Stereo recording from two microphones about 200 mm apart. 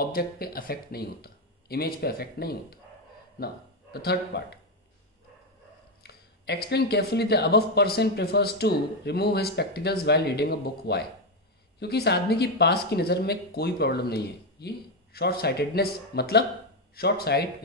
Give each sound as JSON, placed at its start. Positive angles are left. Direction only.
{"t": 0.0, "sound": "speech", "side_deg": 50}
{"t": 3.9, "sound": "speech", "side_deg": 55}
{"t": 6.0, "sound": "speech", "side_deg": 55}